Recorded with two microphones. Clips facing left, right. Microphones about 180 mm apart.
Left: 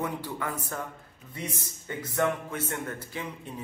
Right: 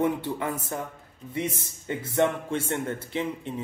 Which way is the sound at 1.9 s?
25° right (ahead or behind).